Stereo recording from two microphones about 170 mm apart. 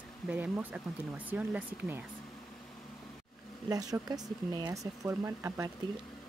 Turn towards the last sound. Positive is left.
turn(degrees=-15)  # may be behind; listen again after turning